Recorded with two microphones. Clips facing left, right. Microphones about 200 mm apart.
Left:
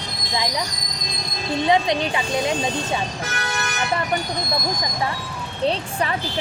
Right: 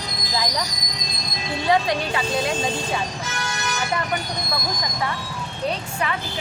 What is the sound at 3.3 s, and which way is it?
Vehicle, 55° left (ahead or behind).